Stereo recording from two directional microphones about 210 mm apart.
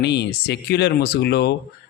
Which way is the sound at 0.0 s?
55° left (ahead or behind).